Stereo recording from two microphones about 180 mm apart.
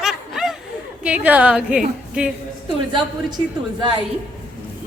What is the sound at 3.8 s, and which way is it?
Speech, 30° right (ahead or behind).